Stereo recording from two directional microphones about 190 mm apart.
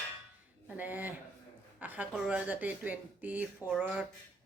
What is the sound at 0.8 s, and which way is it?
A man's voice, 10° right (ahead or behind).